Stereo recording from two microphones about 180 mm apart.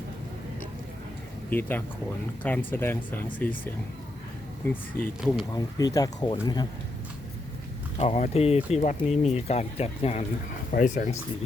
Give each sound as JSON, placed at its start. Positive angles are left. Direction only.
{"t": 1.5, "sound": "speech", "side_deg": 10}
{"t": 7.9, "sound": "speech", "side_deg": 35}
{"t": 10.7, "sound": "speech", "side_deg": 45}